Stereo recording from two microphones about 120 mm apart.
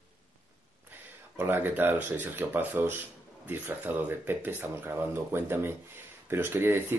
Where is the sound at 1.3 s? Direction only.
15° right (ahead or behind).